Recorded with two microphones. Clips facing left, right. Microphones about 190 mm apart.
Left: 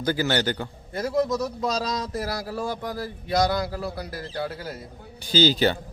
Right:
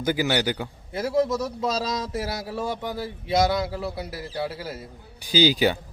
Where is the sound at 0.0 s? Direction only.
15° right (ahead or behind).